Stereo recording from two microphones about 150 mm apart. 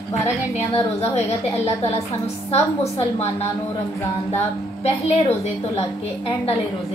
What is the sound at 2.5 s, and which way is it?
Speech, 45° left (ahead or behind).